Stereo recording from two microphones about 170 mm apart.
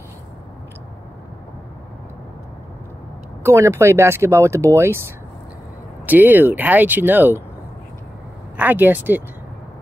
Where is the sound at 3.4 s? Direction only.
15° right (ahead or behind).